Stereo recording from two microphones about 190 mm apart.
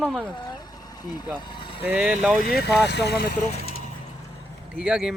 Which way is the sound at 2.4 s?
50° left (ahead or behind).